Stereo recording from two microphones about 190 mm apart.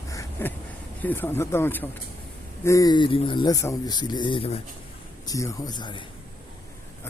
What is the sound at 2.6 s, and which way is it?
Speech, 15° left (ahead or behind).